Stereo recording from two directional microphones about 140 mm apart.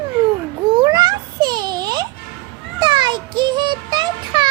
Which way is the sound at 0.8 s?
30° right (ahead or behind).